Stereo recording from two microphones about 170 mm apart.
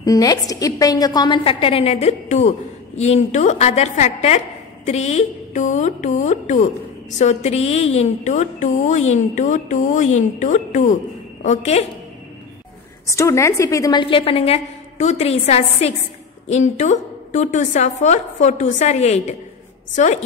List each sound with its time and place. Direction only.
0.0 s a woman's voice: 20° left (ahead or behind); by 11.8 s 40° left (ahead or behind)
13.0 s a woman's voice: 15° left (ahead or behind); by 20.1 s 40° left (ahead or behind)